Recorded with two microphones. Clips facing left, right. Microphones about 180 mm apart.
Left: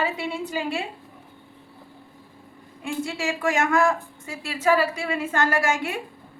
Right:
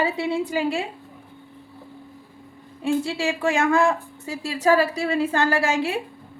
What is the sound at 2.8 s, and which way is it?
A woman's voice, 30° right (ahead or behind).